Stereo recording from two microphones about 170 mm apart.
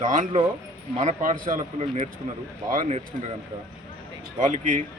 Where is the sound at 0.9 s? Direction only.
40° right (ahead or behind).